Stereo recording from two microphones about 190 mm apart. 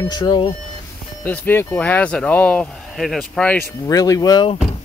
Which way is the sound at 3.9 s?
20° left (ahead or behind).